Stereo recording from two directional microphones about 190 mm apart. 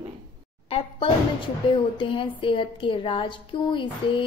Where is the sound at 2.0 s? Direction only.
25° left (ahead or behind).